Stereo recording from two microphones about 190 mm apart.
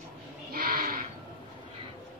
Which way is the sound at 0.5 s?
50° right (ahead or behind).